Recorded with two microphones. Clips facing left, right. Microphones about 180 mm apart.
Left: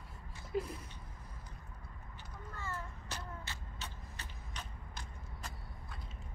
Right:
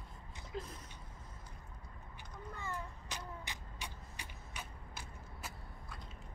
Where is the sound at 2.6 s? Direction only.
15° right (ahead or behind).